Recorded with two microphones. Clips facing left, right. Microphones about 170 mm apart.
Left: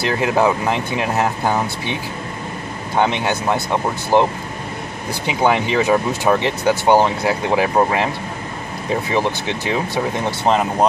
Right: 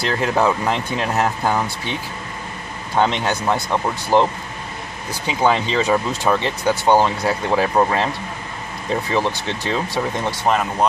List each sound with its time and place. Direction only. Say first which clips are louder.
0.1 s speech: left 2 dB; 15° left (ahead or behind)
3.0 s speech: left 1 dB; 15° left (ahead or behind)
9.1 s speech: left 1 dB; 15° left (ahead or behind)
10.4 s speech: left 3 dB; 25° left (ahead or behind)